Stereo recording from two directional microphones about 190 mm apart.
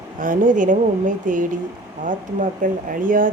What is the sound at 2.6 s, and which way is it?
Speech, 45° right (ahead or behind).